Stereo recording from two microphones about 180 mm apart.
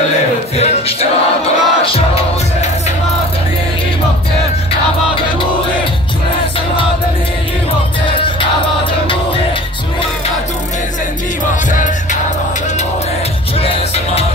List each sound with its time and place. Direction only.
0.6 s music: 35° left (ahead or behind)
11.7 s music: 45° left (ahead or behind)
13.6 s music: 35° left (ahead or behind)